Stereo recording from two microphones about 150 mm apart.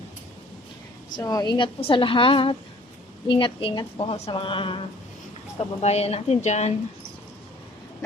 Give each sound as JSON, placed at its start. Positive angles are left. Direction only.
{"t": 1.1, "sound": "a woman's voice", "side_deg": 25}